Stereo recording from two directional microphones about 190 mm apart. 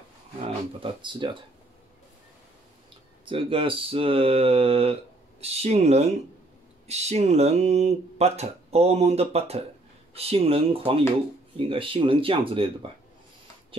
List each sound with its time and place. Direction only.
0.7 s speech: 25° right (ahead or behind)
3.3 s speech: 30° right (ahead or behind)